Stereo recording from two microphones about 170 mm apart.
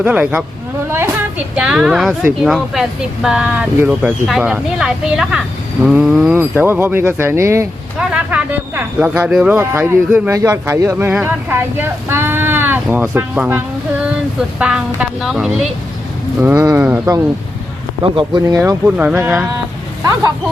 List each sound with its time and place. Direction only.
0.0 s speech: 10° right (ahead or behind)
0.9 s a sound: 15° right (ahead or behind)
1.5 s speech: 5° right (ahead or behind)
14.6 s speech: 5° right (ahead or behind)
16.4 s speech: 15° right (ahead or behind)
18.0 s speech: 30° right (ahead or behind); by 19.5 s 15° right (ahead or behind)